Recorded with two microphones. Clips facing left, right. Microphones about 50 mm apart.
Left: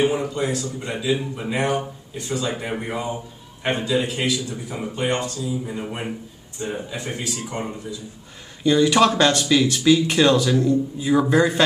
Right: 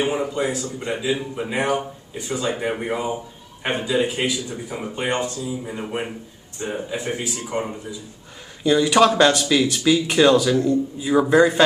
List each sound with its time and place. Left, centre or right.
0.0 s speech: centre
10.6 s speech: centre